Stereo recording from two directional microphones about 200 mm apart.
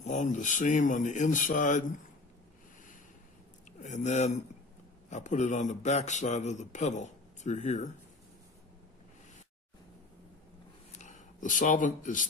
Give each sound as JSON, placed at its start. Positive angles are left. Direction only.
{"t": 0.0, "sound": "speech", "side_deg": 35}
{"t": 3.8, "sound": "speech", "side_deg": 35}
{"t": 10.9, "sound": "a sound", "side_deg": 35}